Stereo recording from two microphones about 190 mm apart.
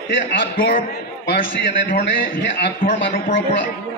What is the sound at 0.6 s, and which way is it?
A man's voice, 55° left (ahead or behind).